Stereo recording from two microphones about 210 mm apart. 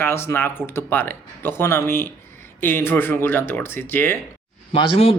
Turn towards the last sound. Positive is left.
turn(degrees=25)  # may be behind; listen again after turning